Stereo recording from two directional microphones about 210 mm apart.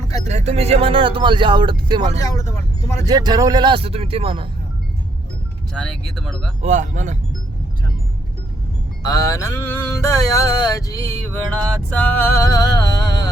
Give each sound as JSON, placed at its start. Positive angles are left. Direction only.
{"t": 0.3, "sound": "speech", "side_deg": -30}
{"t": 2.2, "sound": "speech", "side_deg": 15}
{"t": 3.1, "sound": "speech", "side_deg": -20}
{"t": 5.7, "sound": "speech", "side_deg": 5}
{"t": 6.6, "sound": "speech", "side_deg": -35}
{"t": 9.0, "sound": "mantra", "side_deg": 15}